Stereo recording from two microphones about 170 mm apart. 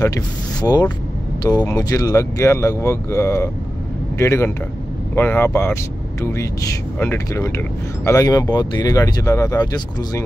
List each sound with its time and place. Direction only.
0.0 s speech: 20° left (ahead or behind)